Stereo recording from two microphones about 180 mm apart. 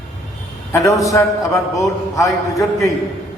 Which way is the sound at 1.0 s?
20° left (ahead or behind).